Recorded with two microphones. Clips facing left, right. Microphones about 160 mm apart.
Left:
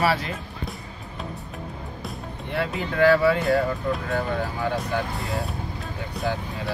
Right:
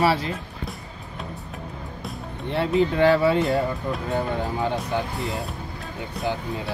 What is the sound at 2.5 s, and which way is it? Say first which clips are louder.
Speech: right 6 dB; 25° right (ahead or behind).